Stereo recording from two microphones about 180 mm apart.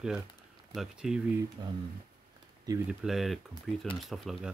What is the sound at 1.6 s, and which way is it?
Speech, 25° right (ahead or behind).